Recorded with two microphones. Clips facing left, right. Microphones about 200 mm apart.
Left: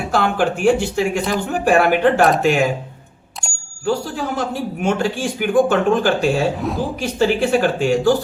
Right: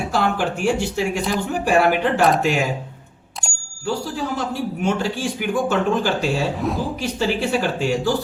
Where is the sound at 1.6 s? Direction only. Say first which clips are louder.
Left 4 dB; 55° left (ahead or behind).